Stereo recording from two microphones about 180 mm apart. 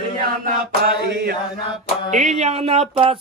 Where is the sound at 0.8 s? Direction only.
60° right (ahead or behind).